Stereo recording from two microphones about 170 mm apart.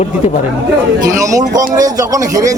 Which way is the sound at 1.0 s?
20° right (ahead or behind).